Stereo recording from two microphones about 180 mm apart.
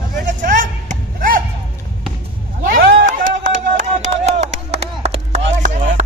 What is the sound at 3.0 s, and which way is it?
Music, 45° right (ahead or behind).